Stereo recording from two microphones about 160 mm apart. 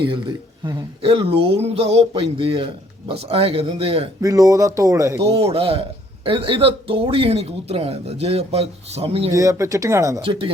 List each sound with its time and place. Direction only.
0.6 s speech: 25° right (ahead or behind)
4.2 s speech: 20° right (ahead or behind)
5.2 s speech: 40° right (ahead or behind)
9.3 s speech: 20° right (ahead or behind)
10.2 s speech: 35° right (ahead or behind)